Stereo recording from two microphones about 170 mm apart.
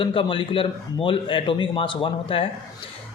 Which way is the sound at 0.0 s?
30° left (ahead or behind).